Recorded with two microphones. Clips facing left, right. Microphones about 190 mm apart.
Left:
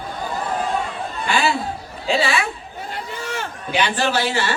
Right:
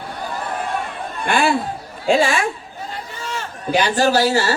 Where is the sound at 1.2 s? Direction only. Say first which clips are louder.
Right 3 dB; 50° right (ahead or behind).